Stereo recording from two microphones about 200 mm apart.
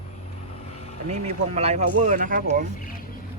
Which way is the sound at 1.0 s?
35° right (ahead or behind).